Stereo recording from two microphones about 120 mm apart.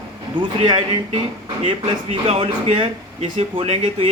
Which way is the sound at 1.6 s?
55° right (ahead or behind).